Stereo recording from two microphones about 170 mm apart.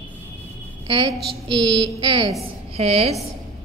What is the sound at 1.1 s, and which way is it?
A woman's voice, 25° right (ahead or behind).